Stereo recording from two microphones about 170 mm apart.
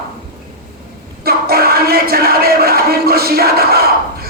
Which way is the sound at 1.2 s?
65° right (ahead or behind).